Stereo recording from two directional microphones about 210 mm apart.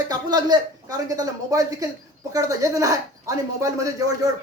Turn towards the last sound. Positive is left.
turn(degrees=-15)  # may be behind; listen again after turning